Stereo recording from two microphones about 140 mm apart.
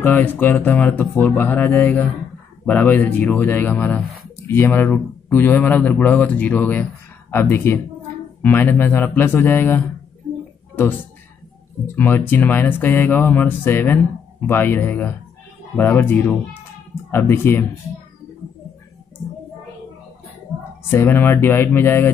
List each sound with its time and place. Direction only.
0.0 s speech: 15° left (ahead or behind)
11.9 s speech: 15° left (ahead or behind)
20.9 s speech: 15° left (ahead or behind)